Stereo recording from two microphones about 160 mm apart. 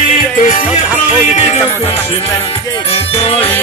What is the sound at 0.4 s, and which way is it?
Music, 50° left (ahead or behind).